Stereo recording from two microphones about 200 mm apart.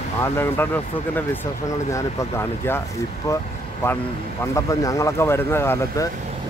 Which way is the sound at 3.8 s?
10° left (ahead or behind).